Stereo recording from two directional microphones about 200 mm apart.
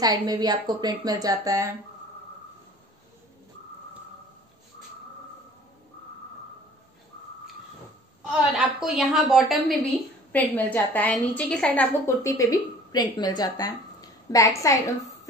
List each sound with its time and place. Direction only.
0.0 s speech: 20° right (ahead or behind)
8.3 s a woman's voice: 5° right (ahead or behind); by 14.8 s 15° left (ahead or behind)